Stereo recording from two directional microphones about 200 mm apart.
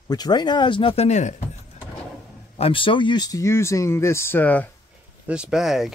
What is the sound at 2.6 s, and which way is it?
Speech, 25° left (ahead or behind).